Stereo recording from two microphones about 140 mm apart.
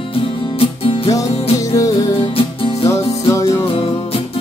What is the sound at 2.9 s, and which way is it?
Music, 20° left (ahead or behind).